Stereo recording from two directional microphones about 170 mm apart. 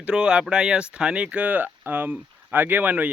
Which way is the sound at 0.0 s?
5° right (ahead or behind).